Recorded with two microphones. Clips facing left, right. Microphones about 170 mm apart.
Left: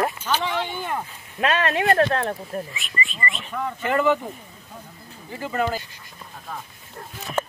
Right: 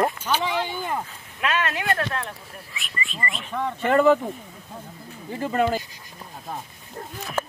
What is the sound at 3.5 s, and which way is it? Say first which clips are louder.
Speech: right 3 dB; 30° right (ahead or behind).